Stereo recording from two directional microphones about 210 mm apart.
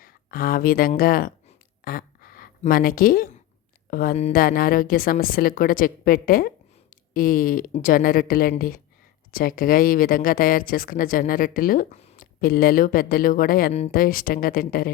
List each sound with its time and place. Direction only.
0.0 s speech: 45° left (ahead or behind)
1.8 s a sound: 45° left (ahead or behind)
3.8 s speech: 40° left (ahead or behind)